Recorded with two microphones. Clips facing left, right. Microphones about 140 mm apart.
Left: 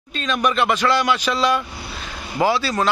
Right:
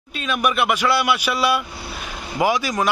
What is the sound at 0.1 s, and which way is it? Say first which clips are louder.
A man's voice: left 1 dB; 10° right (ahead or behind).